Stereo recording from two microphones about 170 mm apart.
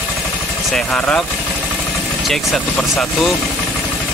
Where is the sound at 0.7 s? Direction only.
5° left (ahead or behind).